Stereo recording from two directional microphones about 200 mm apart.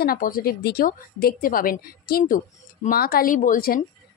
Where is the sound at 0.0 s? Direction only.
45° left (ahead or behind).